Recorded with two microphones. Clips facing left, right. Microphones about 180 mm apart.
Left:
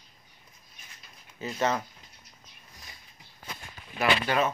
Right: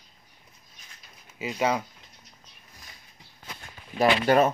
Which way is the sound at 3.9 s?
40° right (ahead or behind).